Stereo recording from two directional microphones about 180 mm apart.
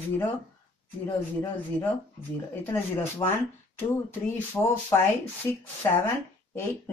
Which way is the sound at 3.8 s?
15° left (ahead or behind).